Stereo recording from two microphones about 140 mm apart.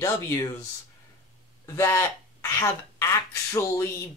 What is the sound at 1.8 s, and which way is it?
Speech, 20° left (ahead or behind).